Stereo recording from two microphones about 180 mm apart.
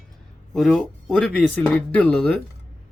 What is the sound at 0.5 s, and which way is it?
Speech, 5° left (ahead or behind).